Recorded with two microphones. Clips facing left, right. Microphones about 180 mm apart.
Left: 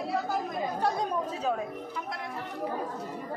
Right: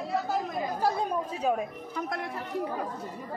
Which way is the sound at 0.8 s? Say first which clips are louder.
Right 2 dB; 5° right (ahead or behind).